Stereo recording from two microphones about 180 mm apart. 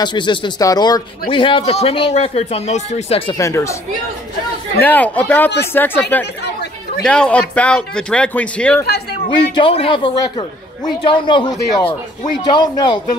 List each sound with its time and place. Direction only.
0.0 s speech: 25° left (ahead or behind)
3.3 s speech: 15° left (ahead or behind)
4.7 s speech: 10° left (ahead or behind)
9.3 s speech: 30° left (ahead or behind)